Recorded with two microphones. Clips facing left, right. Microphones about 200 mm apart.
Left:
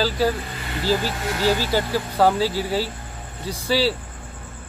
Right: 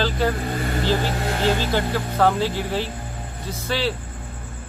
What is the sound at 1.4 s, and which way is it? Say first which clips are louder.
Speech: left 1 dB; 10° left (ahead or behind).